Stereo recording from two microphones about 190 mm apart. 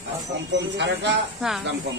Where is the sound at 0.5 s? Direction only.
65° right (ahead or behind).